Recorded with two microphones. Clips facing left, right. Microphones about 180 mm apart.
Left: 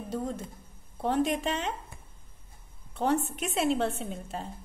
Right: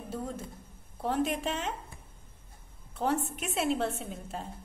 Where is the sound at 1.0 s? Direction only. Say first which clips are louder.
Left 3 dB; 5° right (ahead or behind).